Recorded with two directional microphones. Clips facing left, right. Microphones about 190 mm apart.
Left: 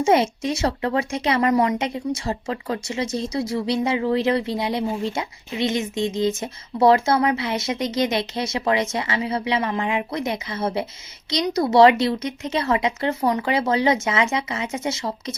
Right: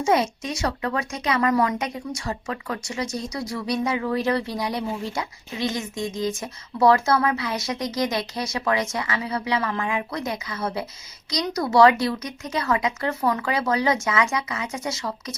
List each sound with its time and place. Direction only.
0.0 s speech: 30° left (ahead or behind)